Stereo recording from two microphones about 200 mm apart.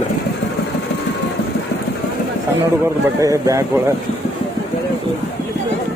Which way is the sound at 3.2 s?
15° right (ahead or behind).